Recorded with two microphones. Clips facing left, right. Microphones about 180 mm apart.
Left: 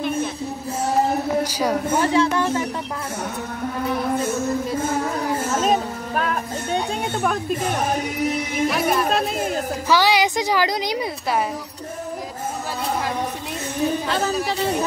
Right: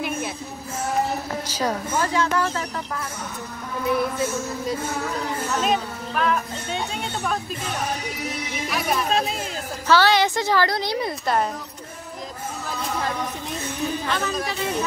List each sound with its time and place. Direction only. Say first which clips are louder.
1.4 s a sound: left 4 dB; 10° left (ahead or behind)
2.0 s speech: left 3 dB; 25° left (ahead or behind)
5.5 s speech: left 2 dB; 40° left (ahead or behind)
9.8 s a woman's voice: right 1 dB; 15° left (ahead or behind)
14.5 s speech: left 4 dB; 35° left (ahead or behind)